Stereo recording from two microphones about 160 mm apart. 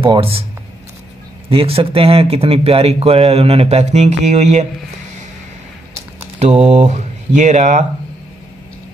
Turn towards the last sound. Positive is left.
turn(degrees=-45)  # may be behind; listen again after turning